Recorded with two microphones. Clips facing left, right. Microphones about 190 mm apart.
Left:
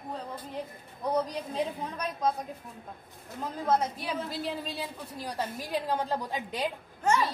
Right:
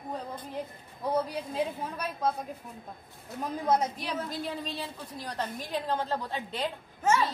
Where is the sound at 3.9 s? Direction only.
5° left (ahead or behind).